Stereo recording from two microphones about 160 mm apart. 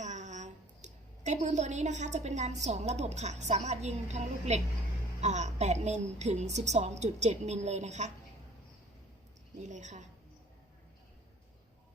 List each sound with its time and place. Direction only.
0.0 s a woman's voice: 50° right (ahead or behind)
9.6 s a woman's voice: 50° right (ahead or behind)